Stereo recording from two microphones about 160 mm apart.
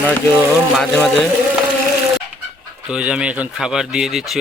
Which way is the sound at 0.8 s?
5° left (ahead or behind).